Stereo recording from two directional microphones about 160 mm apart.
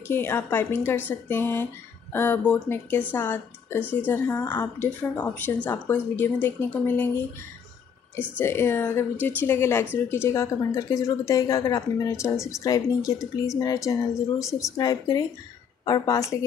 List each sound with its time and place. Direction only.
0.1 s speech: 15° left (ahead or behind)
8.4 s speech: 15° left (ahead or behind)